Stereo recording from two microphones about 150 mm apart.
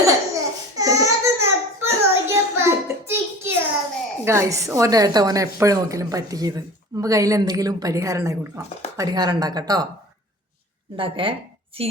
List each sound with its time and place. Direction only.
0.0 s a sound: 20° right (ahead or behind)
4.3 s a woman's voice: 20° right (ahead or behind)
10.9 s speech: 35° right (ahead or behind)